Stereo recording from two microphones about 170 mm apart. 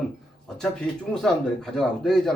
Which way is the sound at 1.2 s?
Centre (ahead or behind).